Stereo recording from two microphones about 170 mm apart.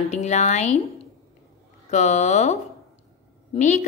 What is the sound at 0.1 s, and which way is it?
Speech, 40° left (ahead or behind).